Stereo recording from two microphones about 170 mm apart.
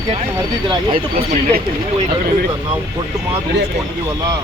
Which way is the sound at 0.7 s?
30° right (ahead or behind).